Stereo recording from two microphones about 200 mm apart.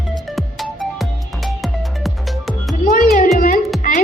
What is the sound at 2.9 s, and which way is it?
Music, 45° left (ahead or behind).